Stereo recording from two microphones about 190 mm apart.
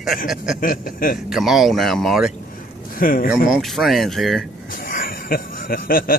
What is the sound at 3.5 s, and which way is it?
Speech, centre (ahead or behind).